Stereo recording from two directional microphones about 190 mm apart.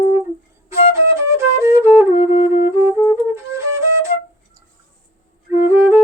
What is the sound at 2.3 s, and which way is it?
Music, 30° left (ahead or behind).